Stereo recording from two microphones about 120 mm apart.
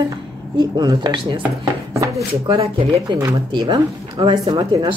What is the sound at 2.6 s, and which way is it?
Speech, 50° right (ahead or behind).